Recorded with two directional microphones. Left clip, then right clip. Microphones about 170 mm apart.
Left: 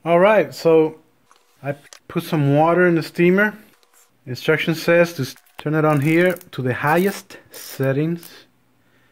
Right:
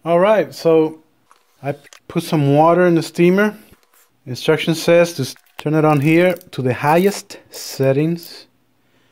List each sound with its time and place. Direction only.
0.0 s speech: 10° right (ahead or behind)
1.6 s speech: 45° right (ahead or behind)